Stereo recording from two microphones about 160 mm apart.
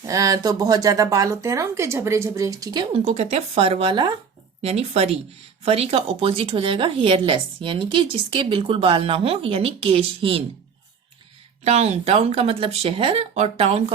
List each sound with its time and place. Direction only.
0.0 s speech: 20° right (ahead or behind)
2.9 s a woman's voice: 40° right (ahead or behind)
11.6 s a woman's voice: 45° right (ahead or behind)